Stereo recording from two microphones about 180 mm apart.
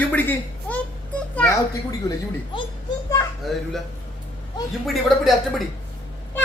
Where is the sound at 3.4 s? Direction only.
Centre (ahead or behind).